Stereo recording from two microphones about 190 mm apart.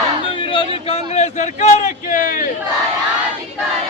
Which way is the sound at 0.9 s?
35° left (ahead or behind).